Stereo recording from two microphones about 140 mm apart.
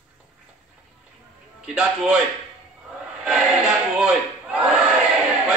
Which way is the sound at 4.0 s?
5° right (ahead or behind).